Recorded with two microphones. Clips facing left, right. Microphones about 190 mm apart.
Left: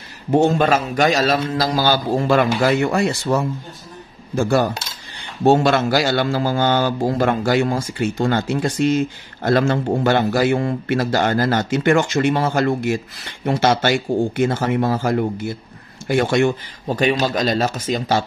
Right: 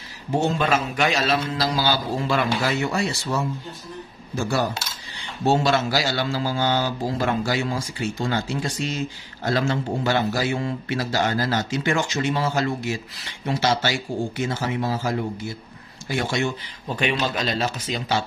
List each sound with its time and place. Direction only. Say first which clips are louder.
0.3 s a man's voice: left 6 dB; 50° left (ahead or behind)